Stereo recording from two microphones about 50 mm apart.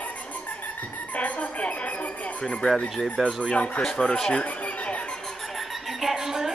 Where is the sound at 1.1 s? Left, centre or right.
Left.